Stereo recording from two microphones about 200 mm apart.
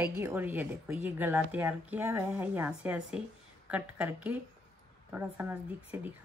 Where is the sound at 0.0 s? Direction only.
10° right (ahead or behind).